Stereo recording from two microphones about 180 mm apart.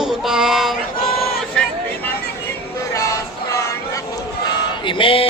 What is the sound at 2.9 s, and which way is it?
Music, 15° left (ahead or behind).